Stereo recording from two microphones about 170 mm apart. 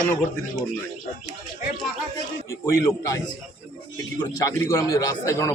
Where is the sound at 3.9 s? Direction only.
20° left (ahead or behind).